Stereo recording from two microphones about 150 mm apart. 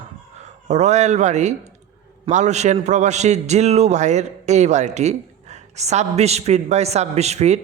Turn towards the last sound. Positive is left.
turn(degrees=-45)  # may be behind; listen again after turning